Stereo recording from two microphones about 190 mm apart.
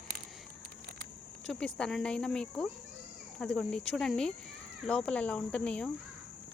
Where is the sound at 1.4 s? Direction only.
5° left (ahead or behind).